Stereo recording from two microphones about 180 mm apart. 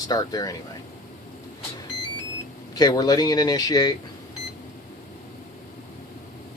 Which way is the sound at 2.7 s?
20° left (ahead or behind).